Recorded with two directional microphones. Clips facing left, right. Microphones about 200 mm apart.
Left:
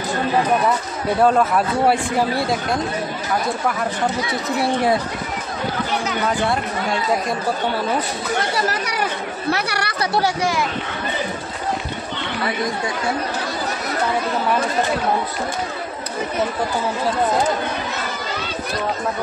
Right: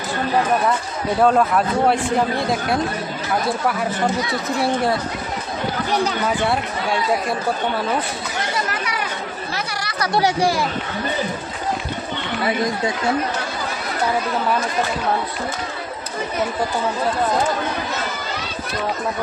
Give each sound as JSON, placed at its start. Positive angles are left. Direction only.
{"t": 1.2, "sound": "speech", "side_deg": 0}
{"t": 9.5, "sound": "speech", "side_deg": 65}
{"t": 10.4, "sound": "speech", "side_deg": -35}